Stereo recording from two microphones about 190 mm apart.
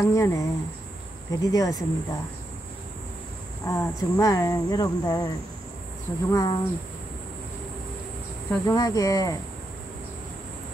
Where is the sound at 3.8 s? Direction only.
20° left (ahead or behind).